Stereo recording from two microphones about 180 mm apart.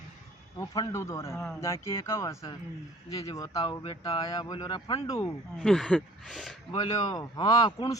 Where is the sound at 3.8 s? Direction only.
35° left (ahead or behind).